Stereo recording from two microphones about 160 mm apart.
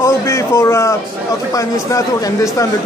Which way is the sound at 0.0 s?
20° left (ahead or behind).